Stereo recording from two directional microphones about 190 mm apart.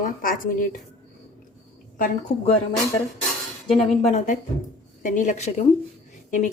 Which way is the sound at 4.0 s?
35° left (ahead or behind).